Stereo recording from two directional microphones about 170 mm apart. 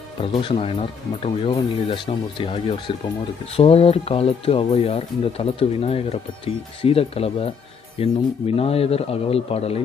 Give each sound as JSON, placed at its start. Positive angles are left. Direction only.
{"t": 0.2, "sound": "speech", "side_deg": 35}